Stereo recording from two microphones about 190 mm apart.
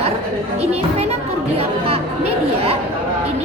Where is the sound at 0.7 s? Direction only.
35° right (ahead or behind).